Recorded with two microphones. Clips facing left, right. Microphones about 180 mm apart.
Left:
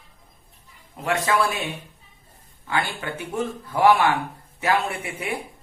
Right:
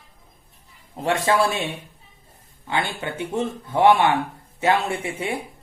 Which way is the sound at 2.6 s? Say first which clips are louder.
Right 1 dB; 25° right (ahead or behind).